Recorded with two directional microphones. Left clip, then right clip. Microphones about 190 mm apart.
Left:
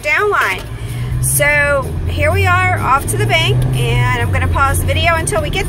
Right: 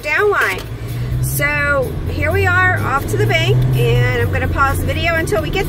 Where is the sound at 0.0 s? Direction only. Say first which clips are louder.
Left 1 dB; 5° left (ahead or behind).